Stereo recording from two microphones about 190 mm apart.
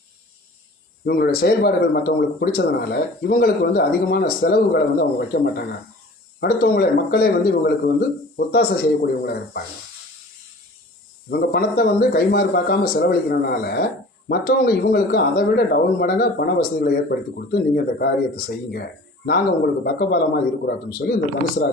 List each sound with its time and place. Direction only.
1.0 s speech: 55° left (ahead or behind)
11.3 s speech: 55° left (ahead or behind)